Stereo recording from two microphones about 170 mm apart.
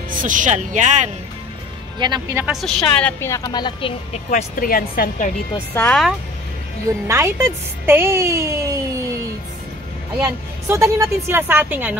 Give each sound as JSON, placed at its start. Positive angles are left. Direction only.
{"t": 0.1, "sound": "speech", "side_deg": -50}
{"t": 2.0, "sound": "speech", "side_deg": -25}
{"t": 2.3, "sound": "a woman's voice", "side_deg": -5}
{"t": 4.1, "sound": "a woman's voice", "side_deg": 45}
{"t": 5.8, "sound": "a woman's voice", "side_deg": 10}
{"t": 7.1, "sound": "speech", "side_deg": -15}
{"t": 10.2, "sound": "speech", "side_deg": -15}